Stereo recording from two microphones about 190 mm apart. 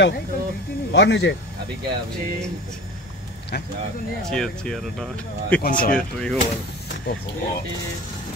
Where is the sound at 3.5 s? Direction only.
65° left (ahead or behind).